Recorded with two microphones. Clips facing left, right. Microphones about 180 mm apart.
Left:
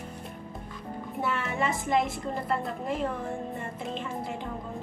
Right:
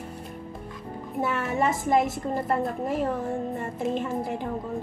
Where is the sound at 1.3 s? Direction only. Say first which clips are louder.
Right 6 dB; 45° right (ahead or behind).